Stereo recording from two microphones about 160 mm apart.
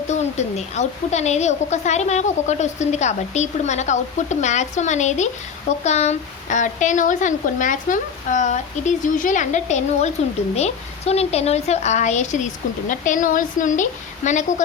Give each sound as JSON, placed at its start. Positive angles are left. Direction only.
{"t": 0.1, "sound": "a woman's voice", "side_deg": 45}